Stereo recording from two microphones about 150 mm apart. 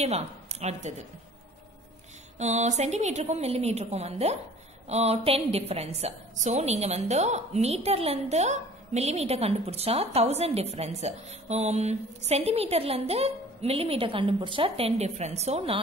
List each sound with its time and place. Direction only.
0.0 s a woman's voice: 45° right (ahead or behind)
2.3 s a woman's voice: 50° right (ahead or behind)